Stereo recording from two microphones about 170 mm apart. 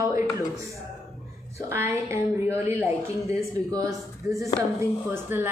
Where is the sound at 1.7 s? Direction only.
15° right (ahead or behind).